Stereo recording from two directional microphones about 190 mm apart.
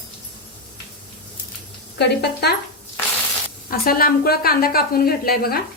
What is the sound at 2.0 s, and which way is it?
Speech, 60° left (ahead or behind).